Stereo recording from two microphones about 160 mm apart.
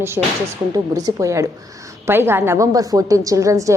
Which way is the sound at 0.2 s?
15° right (ahead or behind).